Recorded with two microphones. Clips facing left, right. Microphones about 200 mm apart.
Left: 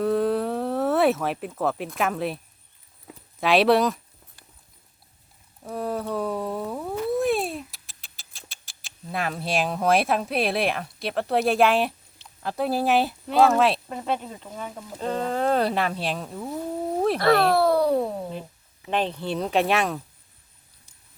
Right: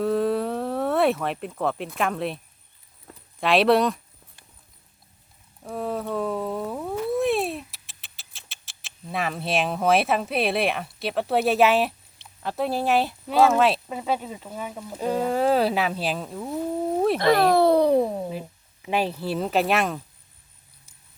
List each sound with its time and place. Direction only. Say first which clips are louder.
0.0 s a sound: even; centre (ahead or behind)
3.1 s speech: left 1 dB; centre (ahead or behind)
5.6 s speech: even; centre (ahead or behind)
17.2 s speech: right 1 dB; 15° right (ahead or behind); by 20.0 s centre (ahead or behind)